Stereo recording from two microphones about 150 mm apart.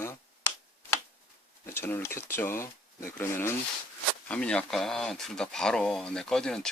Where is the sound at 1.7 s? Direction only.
15° left (ahead or behind).